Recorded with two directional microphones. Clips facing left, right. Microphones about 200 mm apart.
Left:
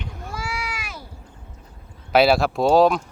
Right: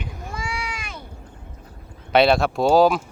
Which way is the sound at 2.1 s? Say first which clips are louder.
Even; 5° left (ahead or behind).